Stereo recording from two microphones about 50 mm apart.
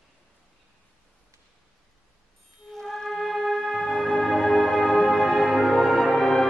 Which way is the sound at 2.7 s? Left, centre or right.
Centre.